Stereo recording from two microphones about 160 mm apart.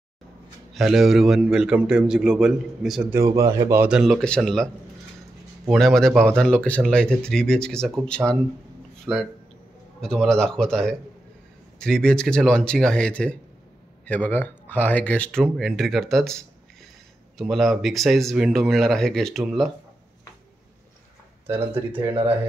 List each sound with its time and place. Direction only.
0.7 s speech: centre (ahead or behind)
3.1 s speech: 20° right (ahead or behind)
3.9 s speech: centre (ahead or behind)
5.7 s speech: centre (ahead or behind)